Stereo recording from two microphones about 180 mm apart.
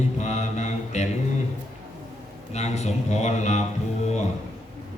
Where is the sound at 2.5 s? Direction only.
40° left (ahead or behind).